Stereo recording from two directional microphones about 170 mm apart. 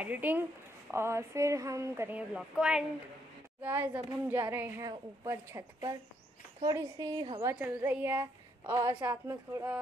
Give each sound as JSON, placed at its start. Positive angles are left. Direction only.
{"t": 0.0, "sound": "a woman's voice", "side_deg": -10}
{"t": 7.5, "sound": "a woman's voice", "side_deg": -10}